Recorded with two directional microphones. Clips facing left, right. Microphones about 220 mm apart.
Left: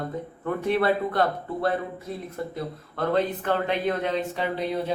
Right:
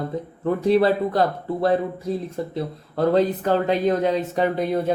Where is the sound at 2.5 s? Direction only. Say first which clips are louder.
Right 6 dB; 35° right (ahead or behind).